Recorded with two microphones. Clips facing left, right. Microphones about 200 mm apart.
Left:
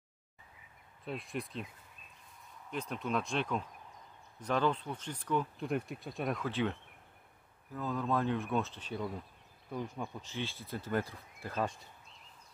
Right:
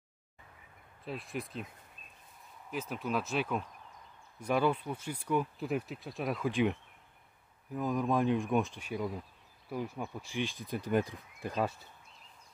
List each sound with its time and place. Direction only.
1.0 s speech: centre (ahead or behind)
2.7 s speech: 5° right (ahead or behind)
6.4 s speech: 15° right (ahead or behind)
11.6 s speech: 5° right (ahead or behind)